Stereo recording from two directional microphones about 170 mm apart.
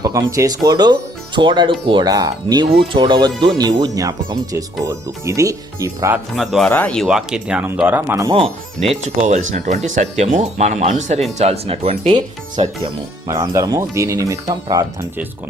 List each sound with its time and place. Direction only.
0.0 s speech: 25° right (ahead or behind)
6.3 s speech: centre (ahead or behind); by 8.3 s 15° right (ahead or behind)
8.9 s speech: 45° right (ahead or behind)
13.2 s speech: 20° right (ahead or behind)